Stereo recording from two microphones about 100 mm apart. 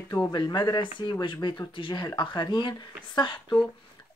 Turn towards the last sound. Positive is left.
turn(degrees=45)  # may be behind; listen again after turning